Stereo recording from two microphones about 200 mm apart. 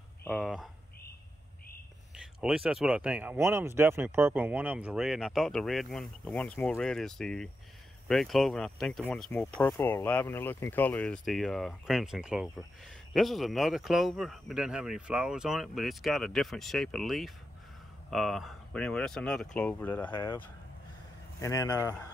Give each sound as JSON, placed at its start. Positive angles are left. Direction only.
{"t": 0.4, "sound": "speech", "side_deg": 0}
{"t": 2.1, "sound": "speech", "side_deg": -5}